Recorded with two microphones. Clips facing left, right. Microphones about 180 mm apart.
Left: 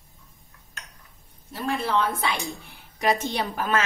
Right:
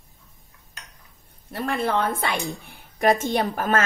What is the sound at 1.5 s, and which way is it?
Speech, 60° right (ahead or behind).